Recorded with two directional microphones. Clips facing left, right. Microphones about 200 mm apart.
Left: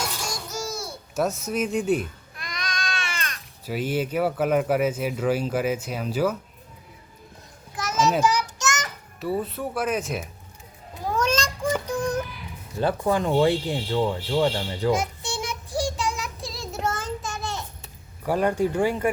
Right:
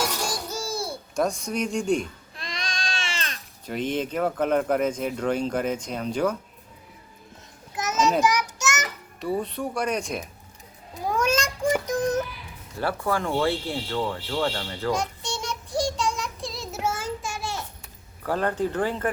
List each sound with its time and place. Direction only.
0.3 s a sound: 30° right (ahead or behind)
1.1 s speech: 5° left (ahead or behind)
2.3 s baby cry: 25° right (ahead or behind)
3.7 s speech: 5° left (ahead or behind)
8.2 s a sound: 15° right (ahead or behind)
9.2 s speech: 5° left (ahead or behind)
11.1 s child singing: 10° right (ahead or behind)
12.8 s a sound: 20° left (ahead or behind); by 17.7 s 10° right (ahead or behind)
18.3 s speech: 15° left (ahead or behind)